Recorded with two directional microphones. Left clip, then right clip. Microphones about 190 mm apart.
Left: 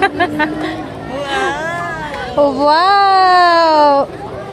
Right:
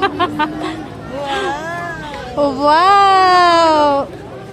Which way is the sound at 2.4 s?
10° right (ahead or behind).